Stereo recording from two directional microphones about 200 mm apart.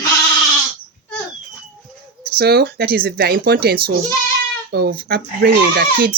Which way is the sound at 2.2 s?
50° right (ahead or behind).